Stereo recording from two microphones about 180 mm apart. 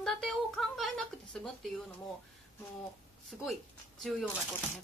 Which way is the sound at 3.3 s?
5° left (ahead or behind).